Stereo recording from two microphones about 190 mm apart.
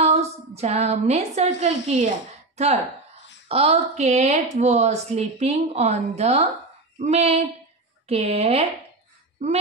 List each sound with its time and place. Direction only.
0.0 s a woman's voice: 35° right (ahead or behind)